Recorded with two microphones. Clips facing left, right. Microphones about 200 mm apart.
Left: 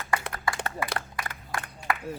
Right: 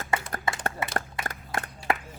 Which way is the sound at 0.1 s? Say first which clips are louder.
Even; 25° right (ahead or behind).